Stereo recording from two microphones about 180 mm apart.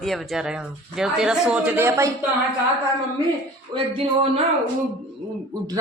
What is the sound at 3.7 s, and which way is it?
Speech, 25° right (ahead or behind).